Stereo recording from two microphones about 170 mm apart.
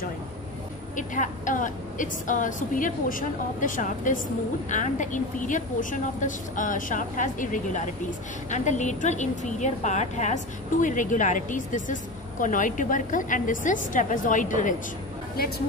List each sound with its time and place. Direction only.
0.9 s a woman's voice: 50° left (ahead or behind)